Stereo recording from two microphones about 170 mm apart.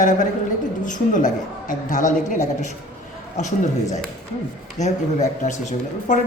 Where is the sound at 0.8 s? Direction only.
50° left (ahead or behind).